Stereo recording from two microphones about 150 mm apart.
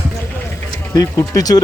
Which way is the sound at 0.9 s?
25° left (ahead or behind).